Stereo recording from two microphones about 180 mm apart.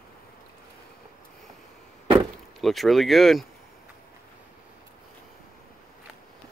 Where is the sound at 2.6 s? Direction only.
Centre (ahead or behind).